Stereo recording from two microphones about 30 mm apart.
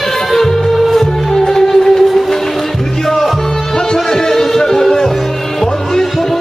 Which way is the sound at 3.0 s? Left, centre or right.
Centre.